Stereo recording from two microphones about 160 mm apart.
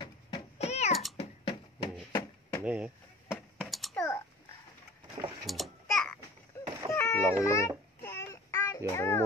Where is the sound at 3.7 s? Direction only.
Centre (ahead or behind).